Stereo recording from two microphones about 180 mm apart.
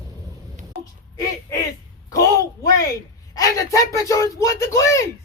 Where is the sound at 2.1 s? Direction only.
20° left (ahead or behind).